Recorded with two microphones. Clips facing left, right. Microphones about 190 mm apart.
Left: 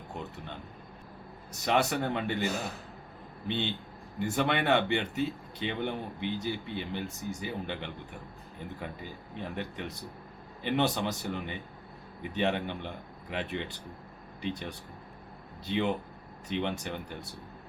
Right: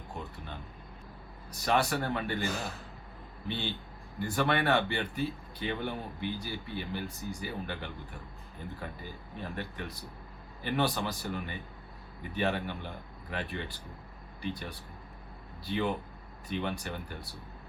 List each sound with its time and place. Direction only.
1.5 s a man's voice: 20° left (ahead or behind)
3.5 s a man's voice: 20° left (ahead or behind)
9.4 s a man's voice: 20° left (ahead or behind)